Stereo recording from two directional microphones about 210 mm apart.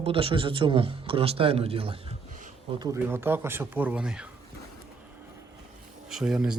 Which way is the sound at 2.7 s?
20° right (ahead or behind).